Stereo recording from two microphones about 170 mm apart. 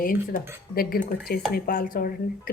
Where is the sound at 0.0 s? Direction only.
55° left (ahead or behind).